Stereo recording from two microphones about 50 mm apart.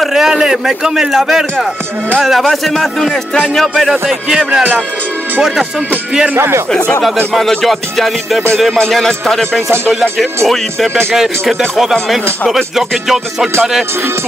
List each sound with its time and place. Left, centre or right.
0.0 s speech: centre
2.4 s speech: centre
3.5 s music: centre
4.1 s speech: centre
6.3 s speech: right
7.3 s music: centre
8.9 s speech: centre
12.4 s music: centre